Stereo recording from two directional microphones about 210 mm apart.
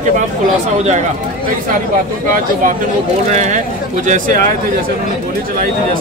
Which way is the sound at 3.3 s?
35° right (ahead or behind).